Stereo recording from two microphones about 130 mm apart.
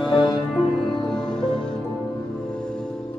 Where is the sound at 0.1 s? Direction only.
35° left (ahead or behind).